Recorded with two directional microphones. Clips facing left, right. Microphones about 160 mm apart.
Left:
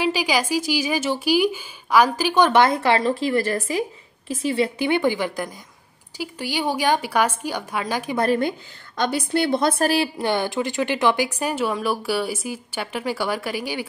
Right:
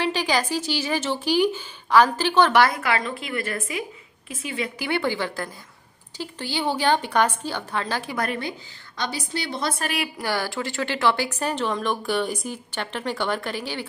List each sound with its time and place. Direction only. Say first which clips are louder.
0.0 s a woman's voice: left 2 dB; 10° left (ahead or behind)
2.6 s speech: left 4 dB; 30° left (ahead or behind)
4.7 s a woman's voice: left 5 dB; 20° left (ahead or behind)
8.4 s a woman's voice: left 7 dB; 50° left (ahead or behind)
9.8 s a woman's voice: left 6 dB; 30° left (ahead or behind); by 13.8 s 10° left (ahead or behind)